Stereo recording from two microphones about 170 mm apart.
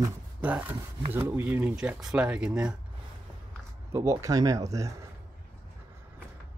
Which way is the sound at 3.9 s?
20° right (ahead or behind).